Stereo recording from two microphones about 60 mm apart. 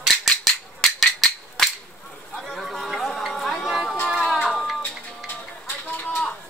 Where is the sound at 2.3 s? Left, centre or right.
Centre.